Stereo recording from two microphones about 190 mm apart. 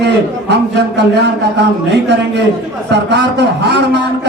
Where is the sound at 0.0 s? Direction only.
60° right (ahead or behind).